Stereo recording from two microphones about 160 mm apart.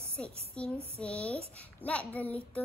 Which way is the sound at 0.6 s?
5° left (ahead or behind).